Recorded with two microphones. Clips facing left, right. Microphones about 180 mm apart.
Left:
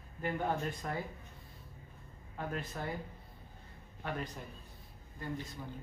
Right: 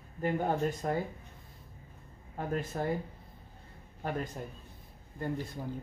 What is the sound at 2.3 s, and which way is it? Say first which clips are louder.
Speech: right 6 dB; 40° right (ahead or behind).